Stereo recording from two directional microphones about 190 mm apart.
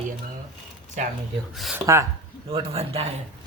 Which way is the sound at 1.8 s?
15° right (ahead or behind).